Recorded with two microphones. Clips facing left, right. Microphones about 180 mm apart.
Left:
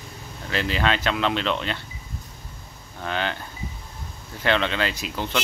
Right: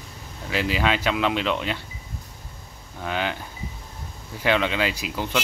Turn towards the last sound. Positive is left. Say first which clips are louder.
# right 1 dB
turn(degrees=-10)  # may be behind; listen again after turning